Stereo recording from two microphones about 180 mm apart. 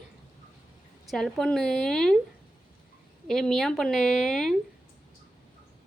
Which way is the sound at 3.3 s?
Centre (ahead or behind).